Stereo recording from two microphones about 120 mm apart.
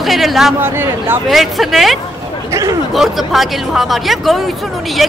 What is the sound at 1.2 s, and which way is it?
A woman's voice, centre (ahead or behind).